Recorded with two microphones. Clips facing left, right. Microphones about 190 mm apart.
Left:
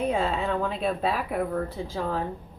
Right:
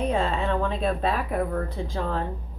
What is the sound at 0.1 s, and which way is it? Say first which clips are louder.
A woman's voice: right 1 dB; 5° left (ahead or behind).